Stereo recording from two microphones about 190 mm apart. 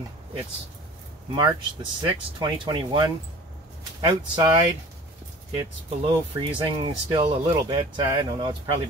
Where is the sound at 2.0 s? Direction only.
25° right (ahead or behind).